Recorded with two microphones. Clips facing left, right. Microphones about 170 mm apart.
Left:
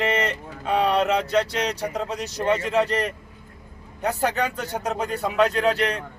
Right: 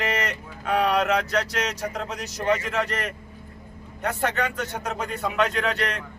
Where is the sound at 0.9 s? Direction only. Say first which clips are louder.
Left 2 dB; 30° left (ahead or behind).